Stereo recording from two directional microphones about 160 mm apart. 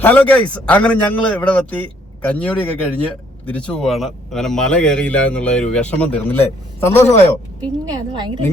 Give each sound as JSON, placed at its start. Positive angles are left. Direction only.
{"t": 0.0, "sound": "a man's voice", "side_deg": 10}
{"t": 7.9, "sound": "a woman's voice", "side_deg": -25}